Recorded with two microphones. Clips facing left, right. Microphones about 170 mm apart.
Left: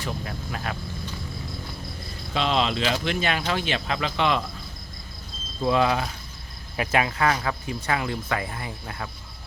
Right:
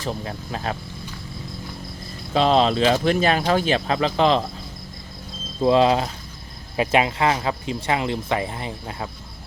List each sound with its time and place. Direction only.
0.0 s speech: 30° right (ahead or behind)
2.3 s speech: 40° right (ahead or behind)
5.6 s speech: 25° right (ahead or behind)